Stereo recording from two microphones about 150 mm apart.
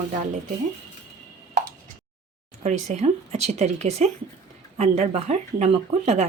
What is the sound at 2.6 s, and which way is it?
A woman's voice, 45° right (ahead or behind).